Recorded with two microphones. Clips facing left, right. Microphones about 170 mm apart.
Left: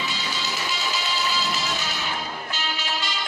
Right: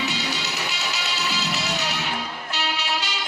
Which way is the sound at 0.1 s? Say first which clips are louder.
Right 2 dB; 70° right (ahead or behind).